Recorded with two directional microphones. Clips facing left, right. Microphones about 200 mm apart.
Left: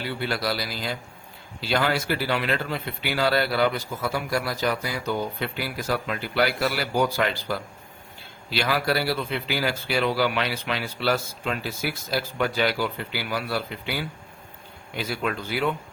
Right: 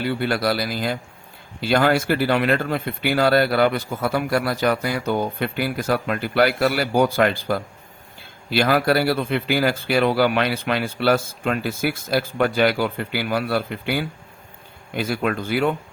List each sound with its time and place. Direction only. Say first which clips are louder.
0.0 s speech: right 6 dB; 55° right (ahead or behind)